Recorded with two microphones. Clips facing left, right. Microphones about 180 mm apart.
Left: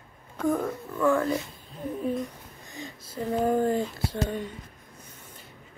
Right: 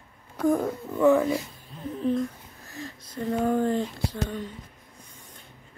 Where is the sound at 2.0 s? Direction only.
Centre (ahead or behind).